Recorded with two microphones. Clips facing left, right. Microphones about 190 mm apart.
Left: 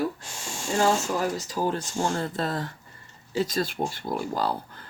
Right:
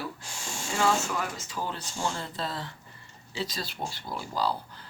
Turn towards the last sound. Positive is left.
turn(degrees=50)  # may be behind; listen again after turning